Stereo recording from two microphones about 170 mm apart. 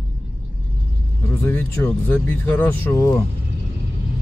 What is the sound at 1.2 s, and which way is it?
Speech, 10° left (ahead or behind).